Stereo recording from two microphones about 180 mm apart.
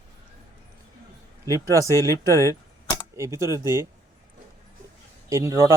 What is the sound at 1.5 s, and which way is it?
Speech, 20° right (ahead or behind).